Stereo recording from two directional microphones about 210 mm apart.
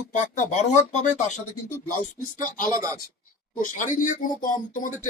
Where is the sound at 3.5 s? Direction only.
40° left (ahead or behind).